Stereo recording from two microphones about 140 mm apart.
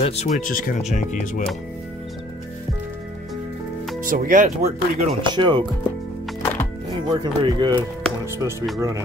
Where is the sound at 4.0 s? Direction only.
75° right (ahead or behind).